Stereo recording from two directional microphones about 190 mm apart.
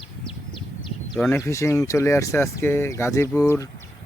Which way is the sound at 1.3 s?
15° left (ahead or behind).